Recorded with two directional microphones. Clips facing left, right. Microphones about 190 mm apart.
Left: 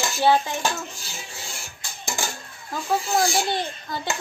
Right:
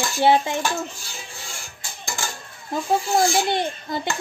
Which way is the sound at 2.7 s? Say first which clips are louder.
Right 3 dB; 25° right (ahead or behind).